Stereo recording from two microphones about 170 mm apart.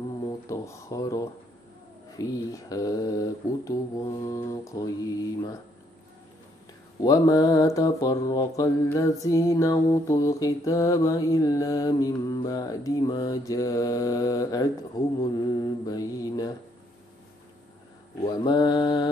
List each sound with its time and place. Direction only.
0.5 s mantra: 20° left (ahead or behind)
7.0 s mantra: 20° left (ahead or behind)
18.2 s mantra: 25° left (ahead or behind)